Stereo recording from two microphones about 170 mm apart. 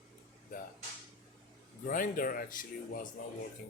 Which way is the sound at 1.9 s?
55° left (ahead or behind).